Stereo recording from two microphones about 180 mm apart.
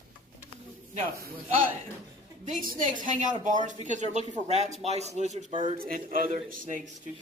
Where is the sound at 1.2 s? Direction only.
55° right (ahead or behind).